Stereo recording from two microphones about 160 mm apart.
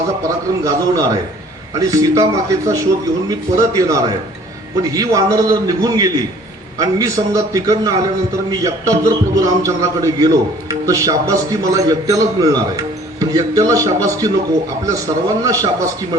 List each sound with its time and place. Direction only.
0.6 s a man's voice: 20° right (ahead or behind)